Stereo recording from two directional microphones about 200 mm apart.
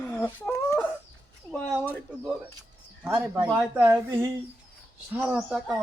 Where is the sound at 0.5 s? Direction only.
10° left (ahead or behind).